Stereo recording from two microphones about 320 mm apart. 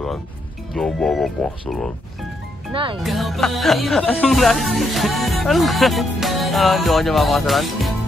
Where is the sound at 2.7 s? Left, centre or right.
Centre.